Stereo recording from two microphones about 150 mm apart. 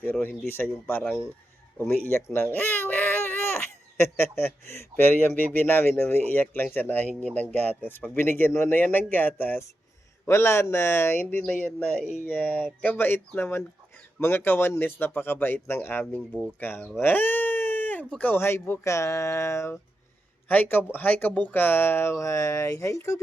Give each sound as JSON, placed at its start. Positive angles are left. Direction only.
{"t": 0.0, "sound": "speech", "side_deg": 15}